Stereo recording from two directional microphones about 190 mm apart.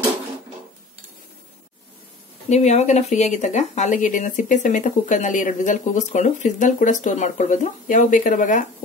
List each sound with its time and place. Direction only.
2.5 s speech: 35° left (ahead or behind)